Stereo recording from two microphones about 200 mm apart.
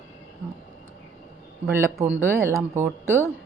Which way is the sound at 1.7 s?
10° right (ahead or behind).